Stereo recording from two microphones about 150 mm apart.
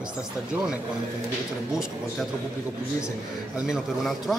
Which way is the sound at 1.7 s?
5° right (ahead or behind).